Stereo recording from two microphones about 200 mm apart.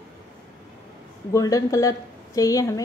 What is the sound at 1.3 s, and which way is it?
A woman's voice, 15° left (ahead or behind).